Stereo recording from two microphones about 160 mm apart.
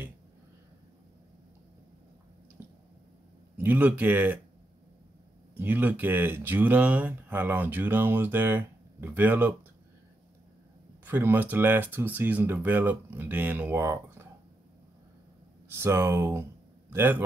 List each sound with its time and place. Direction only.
3.5 s speech: 10° right (ahead or behind)
5.6 s speech: 10° right (ahead or behind)
11.1 s speech: 15° right (ahead or behind)
15.7 s speech: 15° right (ahead or behind)